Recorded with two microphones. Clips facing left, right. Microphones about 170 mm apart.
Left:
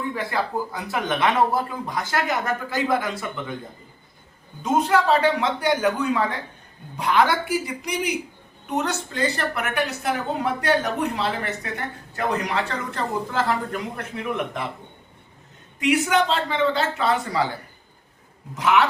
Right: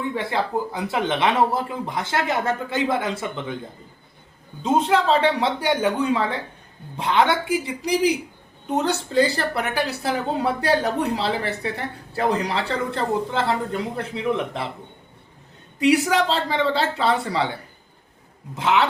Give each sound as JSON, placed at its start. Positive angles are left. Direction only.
{"t": 0.1, "sound": "speech", "side_deg": -25}
{"t": 4.6, "sound": "speech", "side_deg": -25}
{"t": 15.8, "sound": "speech", "side_deg": -35}
{"t": 18.5, "sound": "speech", "side_deg": -25}